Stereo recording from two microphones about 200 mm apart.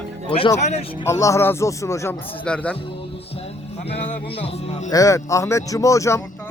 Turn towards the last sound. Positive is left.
turn(degrees=15)  # may be behind; listen again after turning